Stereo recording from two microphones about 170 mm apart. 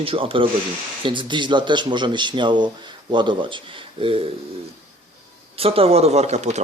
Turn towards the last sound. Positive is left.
turn(degrees=-40)  # may be behind; listen again after turning